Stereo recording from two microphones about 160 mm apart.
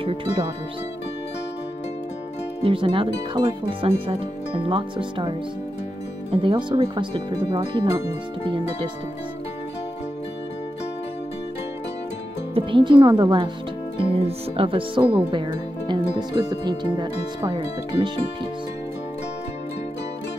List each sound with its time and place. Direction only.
0.0 s speech: 35° right (ahead or behind)
2.6 s speech: 35° right (ahead or behind)
6.3 s speech: 30° right (ahead or behind)
12.5 s speech: 30° right (ahead or behind)